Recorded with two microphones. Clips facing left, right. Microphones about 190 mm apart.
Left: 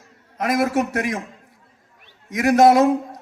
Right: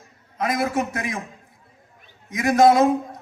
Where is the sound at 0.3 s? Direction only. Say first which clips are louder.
Left 3 dB; 75° left (ahead or behind).